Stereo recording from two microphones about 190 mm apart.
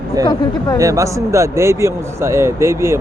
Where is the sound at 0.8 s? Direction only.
15° right (ahead or behind).